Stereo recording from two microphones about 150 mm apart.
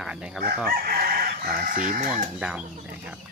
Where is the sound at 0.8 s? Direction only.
85° right.